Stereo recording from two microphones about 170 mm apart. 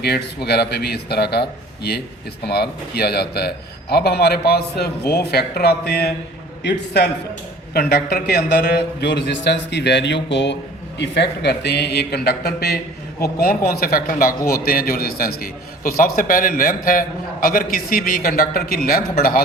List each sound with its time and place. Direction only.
0.0 s a man's voice: 70° left (ahead or behind)
7.7 s a man's voice: 65° left (ahead or behind)